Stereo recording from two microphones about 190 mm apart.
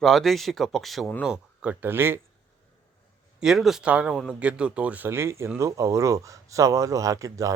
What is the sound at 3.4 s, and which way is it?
A man's voice, centre (ahead or behind).